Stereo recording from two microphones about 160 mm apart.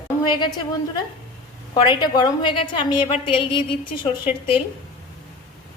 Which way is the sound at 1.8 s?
30° left (ahead or behind).